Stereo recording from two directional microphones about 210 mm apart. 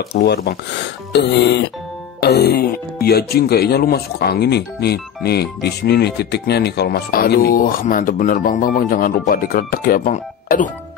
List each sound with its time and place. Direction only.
0.1 s speech: 50° left (ahead or behind)